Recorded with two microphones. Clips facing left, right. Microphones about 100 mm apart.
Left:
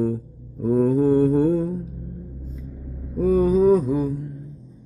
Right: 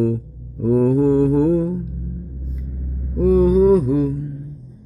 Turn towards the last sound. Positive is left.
turn(degrees=-5)  # may be behind; listen again after turning